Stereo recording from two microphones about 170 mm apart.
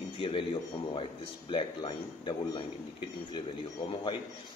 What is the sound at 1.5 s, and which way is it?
A man's voice, 30° left (ahead or behind).